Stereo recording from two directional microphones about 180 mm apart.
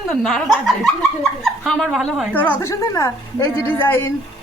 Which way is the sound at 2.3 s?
10° left (ahead or behind).